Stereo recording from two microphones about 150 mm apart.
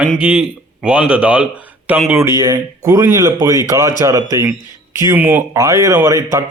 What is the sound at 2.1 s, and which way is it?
A man's voice, 20° right (ahead or behind).